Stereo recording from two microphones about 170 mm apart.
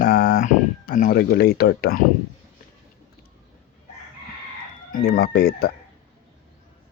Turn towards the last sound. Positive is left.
turn(degrees=65)  # may be behind; listen again after turning